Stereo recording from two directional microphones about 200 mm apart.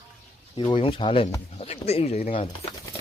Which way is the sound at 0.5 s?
25° left (ahead or behind).